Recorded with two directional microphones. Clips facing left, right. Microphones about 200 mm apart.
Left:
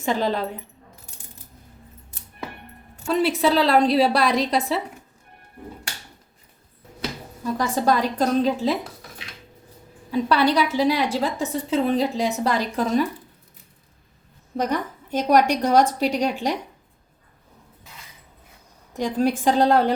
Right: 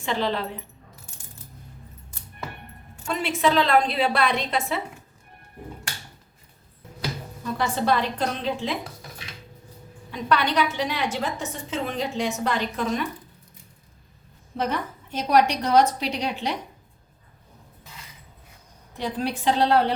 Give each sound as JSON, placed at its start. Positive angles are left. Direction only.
{"t": 0.0, "sound": "a woman's voice", "side_deg": 40}
{"t": 2.9, "sound": "a woman's voice", "side_deg": 35}
{"t": 7.6, "sound": "a woman's voice", "side_deg": 40}
{"t": 10.1, "sound": "a woman's voice", "side_deg": 35}
{"t": 14.5, "sound": "a woman's voice", "side_deg": 45}
{"t": 18.9, "sound": "a woman's voice", "side_deg": 45}